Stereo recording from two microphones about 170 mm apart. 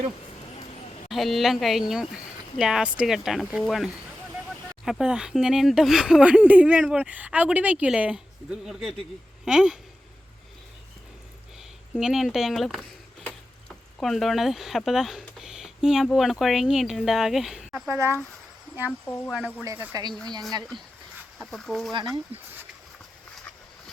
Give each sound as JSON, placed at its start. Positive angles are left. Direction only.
{"t": 1.1, "sound": "speech", "side_deg": 0}
{"t": 4.9, "sound": "speech", "side_deg": -5}
{"t": 11.9, "sound": "speech", "side_deg": 0}
{"t": 17.8, "sound": "speech", "side_deg": -15}
{"t": 19.6, "sound": "speech", "side_deg": -20}
{"t": 21.3, "sound": "speech", "side_deg": 0}